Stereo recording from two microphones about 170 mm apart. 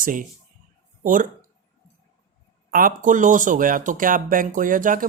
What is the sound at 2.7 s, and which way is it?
Speech, 55° right (ahead or behind).